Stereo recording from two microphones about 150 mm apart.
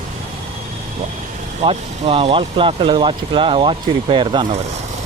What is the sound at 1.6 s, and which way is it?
Speech, 40° right (ahead or behind).